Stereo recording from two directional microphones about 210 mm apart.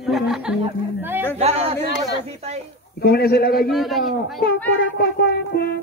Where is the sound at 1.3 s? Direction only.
30° right (ahead or behind).